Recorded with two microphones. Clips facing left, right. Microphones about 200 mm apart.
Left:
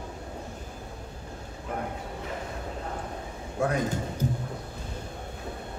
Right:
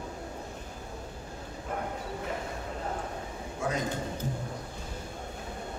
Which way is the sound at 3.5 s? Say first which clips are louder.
Left 5 dB; 60° left (ahead or behind).